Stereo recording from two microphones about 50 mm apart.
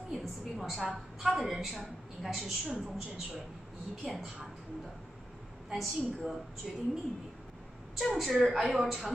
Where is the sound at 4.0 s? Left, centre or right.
Centre.